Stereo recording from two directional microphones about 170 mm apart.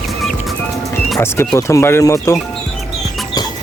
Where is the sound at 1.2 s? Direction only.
15° left (ahead or behind).